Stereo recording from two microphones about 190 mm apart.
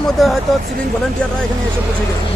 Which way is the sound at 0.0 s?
Centre (ahead or behind).